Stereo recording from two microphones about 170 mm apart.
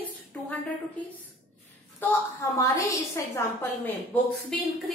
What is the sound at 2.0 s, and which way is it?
A woman's voice, 15° left (ahead or behind).